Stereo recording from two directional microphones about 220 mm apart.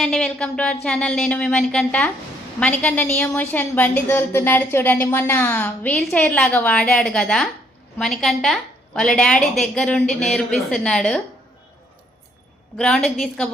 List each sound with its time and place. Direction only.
0.0 s a woman's voice: centre (ahead or behind)
12.7 s a woman's voice: 5° left (ahead or behind)